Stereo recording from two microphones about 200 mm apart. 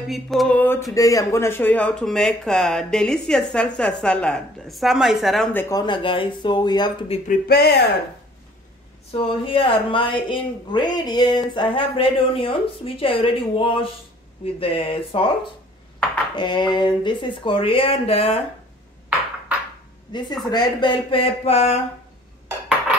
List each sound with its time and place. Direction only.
0.1 s speech: centre (ahead or behind); by 7.2 s 20° left (ahead or behind)
7.2 s speech: 50° left (ahead or behind)
9.1 s speech: 25° left (ahead or behind)
16.3 s speech: 20° left (ahead or behind)
20.1 s speech: 20° left (ahead or behind)